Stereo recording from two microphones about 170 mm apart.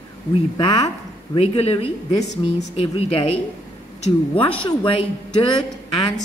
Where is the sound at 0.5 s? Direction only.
30° left (ahead or behind).